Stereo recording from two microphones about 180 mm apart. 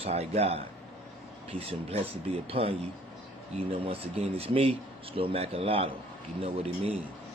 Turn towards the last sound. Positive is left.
turn(degrees=-35)  # may be behind; listen again after turning